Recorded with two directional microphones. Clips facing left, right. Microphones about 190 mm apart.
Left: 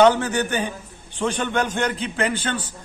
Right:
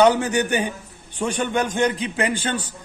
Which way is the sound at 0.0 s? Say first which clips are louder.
Even; 15° right (ahead or behind).